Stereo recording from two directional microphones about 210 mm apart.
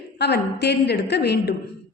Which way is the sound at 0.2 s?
50° left (ahead or behind).